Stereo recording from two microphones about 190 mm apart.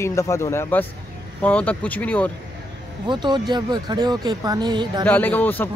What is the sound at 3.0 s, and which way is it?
Speech, 25° right (ahead or behind).